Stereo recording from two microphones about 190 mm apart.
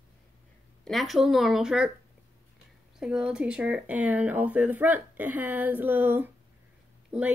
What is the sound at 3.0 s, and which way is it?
Speech, 5° right (ahead or behind).